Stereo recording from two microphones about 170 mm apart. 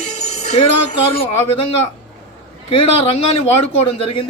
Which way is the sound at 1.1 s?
35° left (ahead or behind).